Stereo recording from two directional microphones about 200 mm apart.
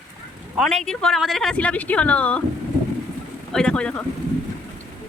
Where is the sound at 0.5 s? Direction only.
Centre (ahead or behind).